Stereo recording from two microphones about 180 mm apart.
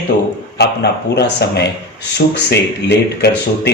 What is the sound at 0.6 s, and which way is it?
A man's voice, 70° left (ahead or behind).